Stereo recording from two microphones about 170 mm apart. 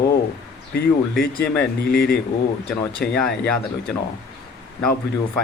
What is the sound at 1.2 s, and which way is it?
Speech, 60° left (ahead or behind).